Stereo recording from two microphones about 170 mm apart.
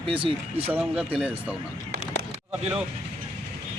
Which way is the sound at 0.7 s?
5° right (ahead or behind).